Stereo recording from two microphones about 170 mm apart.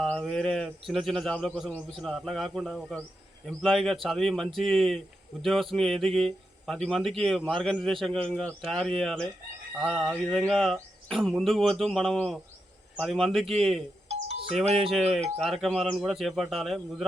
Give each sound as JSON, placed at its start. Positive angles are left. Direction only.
{"t": 0.0, "sound": "speech", "side_deg": 5}
{"t": 14.1, "sound": "music", "side_deg": -35}
{"t": 15.6, "sound": "speech", "side_deg": 0}